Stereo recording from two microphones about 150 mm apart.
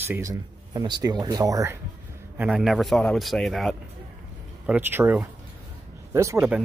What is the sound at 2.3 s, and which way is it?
A man's voice, 5° right (ahead or behind).